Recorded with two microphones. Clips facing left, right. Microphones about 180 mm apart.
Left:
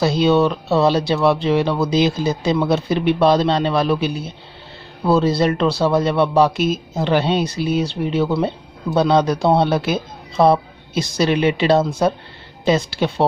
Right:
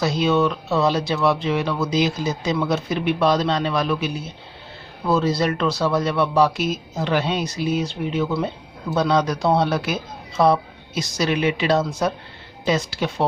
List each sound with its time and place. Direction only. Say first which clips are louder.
0.0 s speech: left 4 dB; 30° left (ahead or behind)